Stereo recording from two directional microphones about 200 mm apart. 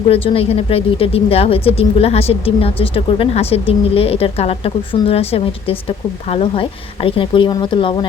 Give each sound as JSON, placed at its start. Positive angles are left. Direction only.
{"t": 0.1, "sound": "a woman's voice", "side_deg": 30}